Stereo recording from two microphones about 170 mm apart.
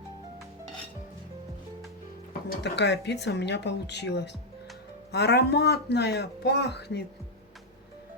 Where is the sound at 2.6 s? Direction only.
90° left.